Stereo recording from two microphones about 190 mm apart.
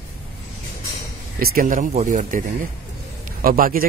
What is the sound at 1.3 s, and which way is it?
A man's voice, 50° right (ahead or behind).